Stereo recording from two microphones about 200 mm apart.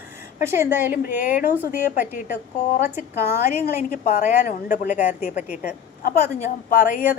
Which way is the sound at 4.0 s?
40° left (ahead or behind).